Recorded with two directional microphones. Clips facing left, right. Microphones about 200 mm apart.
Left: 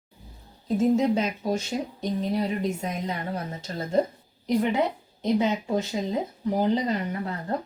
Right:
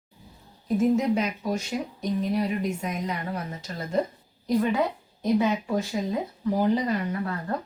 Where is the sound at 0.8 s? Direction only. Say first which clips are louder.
Left 1 dB; 25° left (ahead or behind).